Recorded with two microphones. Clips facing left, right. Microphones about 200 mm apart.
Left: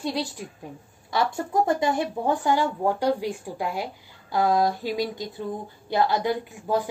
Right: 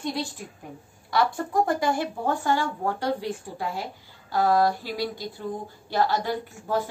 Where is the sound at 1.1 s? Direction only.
25° left (ahead or behind).